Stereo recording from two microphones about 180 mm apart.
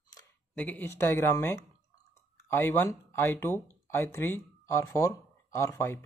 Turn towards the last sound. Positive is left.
turn(degrees=15)  # may be behind; listen again after turning